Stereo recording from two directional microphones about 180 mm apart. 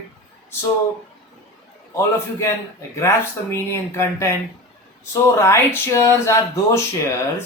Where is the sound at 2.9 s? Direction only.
15° left (ahead or behind).